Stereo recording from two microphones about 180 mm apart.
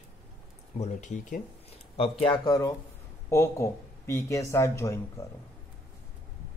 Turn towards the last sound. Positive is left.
turn(degrees=15)  # may be behind; listen again after turning